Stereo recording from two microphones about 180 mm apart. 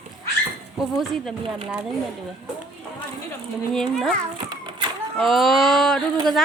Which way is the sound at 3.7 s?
Centre (ahead or behind).